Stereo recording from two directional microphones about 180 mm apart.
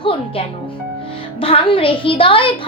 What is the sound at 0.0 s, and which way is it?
Music, 30° left (ahead or behind).